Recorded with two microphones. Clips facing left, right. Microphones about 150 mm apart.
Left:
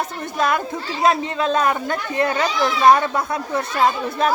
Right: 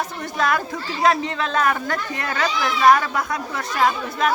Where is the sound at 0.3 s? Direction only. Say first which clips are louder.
Left 1 dB; 20° left (ahead or behind).